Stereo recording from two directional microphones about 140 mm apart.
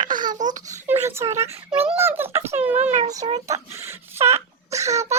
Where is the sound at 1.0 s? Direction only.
20° right (ahead or behind).